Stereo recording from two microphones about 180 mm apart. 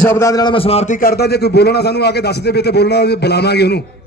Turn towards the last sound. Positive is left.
turn(degrees=65)  # may be behind; listen again after turning